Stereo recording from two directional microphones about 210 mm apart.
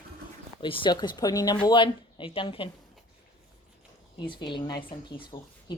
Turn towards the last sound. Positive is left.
turn(degrees=25)  # may be behind; listen again after turning